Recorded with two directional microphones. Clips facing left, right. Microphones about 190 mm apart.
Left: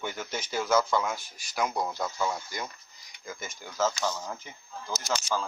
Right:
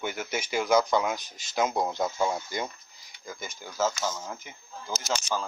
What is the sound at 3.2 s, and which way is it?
Speech, centre (ahead or behind).